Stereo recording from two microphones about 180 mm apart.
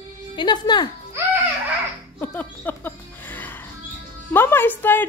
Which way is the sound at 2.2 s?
10° left (ahead or behind).